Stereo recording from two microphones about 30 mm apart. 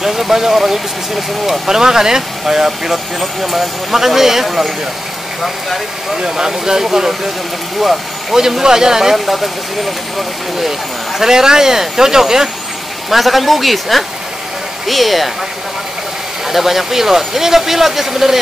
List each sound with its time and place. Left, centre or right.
0.0 s speech: centre
6.1 s speech: right; by 8.4 s centre
8.4 s speech: centre
9.1 s speech: centre
11.1 s speech: centre
13.1 s speech: centre
16.4 s speech: centre